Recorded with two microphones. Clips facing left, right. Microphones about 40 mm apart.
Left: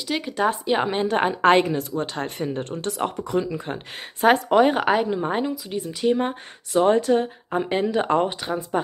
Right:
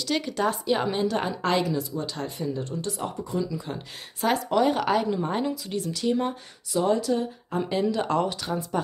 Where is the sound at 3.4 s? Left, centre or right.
Left.